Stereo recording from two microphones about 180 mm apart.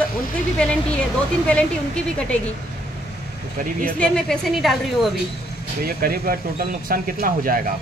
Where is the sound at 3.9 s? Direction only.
5° left (ahead or behind).